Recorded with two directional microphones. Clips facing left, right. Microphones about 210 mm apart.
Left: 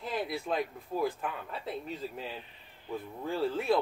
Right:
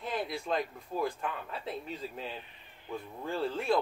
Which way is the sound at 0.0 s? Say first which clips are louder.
Left 1 dB; centre (ahead or behind).